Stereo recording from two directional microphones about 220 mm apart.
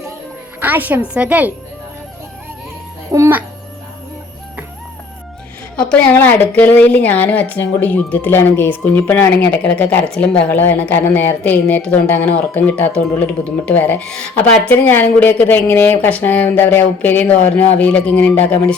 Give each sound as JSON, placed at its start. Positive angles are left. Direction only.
{"t": 0.6, "sound": "a woman's voice", "side_deg": -10}
{"t": 3.1, "sound": "a woman's voice", "side_deg": -10}
{"t": 5.9, "sound": "a woman's voice", "side_deg": 10}